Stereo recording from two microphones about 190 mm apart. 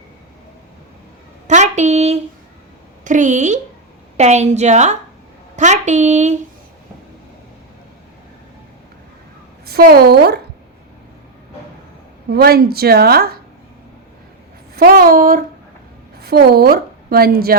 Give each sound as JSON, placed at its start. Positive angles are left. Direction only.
{"t": 1.5, "sound": "a sound", "side_deg": -40}
{"t": 3.0, "sound": "speech", "side_deg": -40}
{"t": 9.6, "sound": "a woman's voice", "side_deg": -55}
{"t": 12.3, "sound": "a woman's voice", "side_deg": -55}
{"t": 14.8, "sound": "a sound", "side_deg": -50}
{"t": 16.1, "sound": "a woman's voice", "side_deg": -55}